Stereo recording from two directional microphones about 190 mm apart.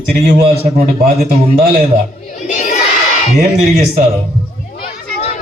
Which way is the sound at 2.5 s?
40° left (ahead or behind).